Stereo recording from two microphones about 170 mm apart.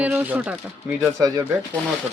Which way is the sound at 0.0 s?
10° right (ahead or behind).